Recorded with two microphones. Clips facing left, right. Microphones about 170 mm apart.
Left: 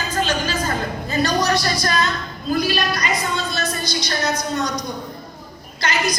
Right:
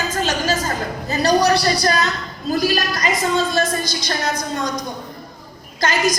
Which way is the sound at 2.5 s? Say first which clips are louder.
Right 1 dB; 45° right (ahead or behind).